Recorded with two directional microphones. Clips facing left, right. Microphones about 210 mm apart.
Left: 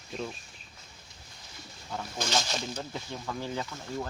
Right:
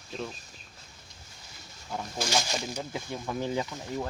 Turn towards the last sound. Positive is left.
turn(degrees=-15)  # may be behind; listen again after turning